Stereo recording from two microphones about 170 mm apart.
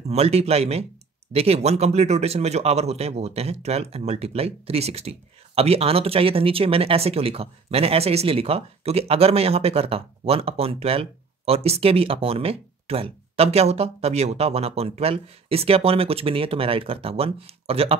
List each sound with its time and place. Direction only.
0.1 s speech: 40° right (ahead or behind)